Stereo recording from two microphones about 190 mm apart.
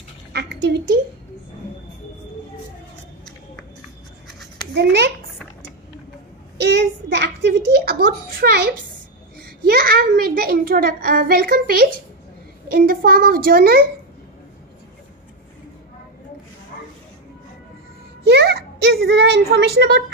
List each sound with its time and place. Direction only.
0.3 s a woman's voice: 60° right (ahead or behind)
4.7 s a child's voice: 60° right (ahead or behind)
7.2 s a sound: 60° right (ahead or behind)
9.4 s a child's voice: 55° right (ahead or behind)
16.7 s vehicle: 50° left (ahead or behind)
18.3 s a sound: 55° right (ahead or behind)